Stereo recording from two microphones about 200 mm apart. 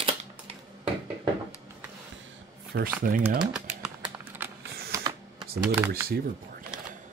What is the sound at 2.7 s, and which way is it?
Speech, 45° right (ahead or behind).